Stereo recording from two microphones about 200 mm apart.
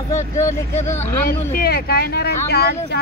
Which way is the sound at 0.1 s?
15° left (ahead or behind).